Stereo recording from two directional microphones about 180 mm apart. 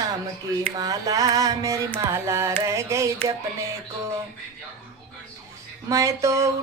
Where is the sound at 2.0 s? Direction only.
15° right (ahead or behind).